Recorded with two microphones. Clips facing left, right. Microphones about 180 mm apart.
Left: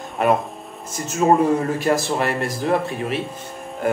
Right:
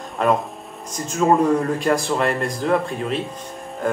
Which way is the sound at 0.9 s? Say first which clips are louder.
Left 1 dB; 5° left (ahead or behind).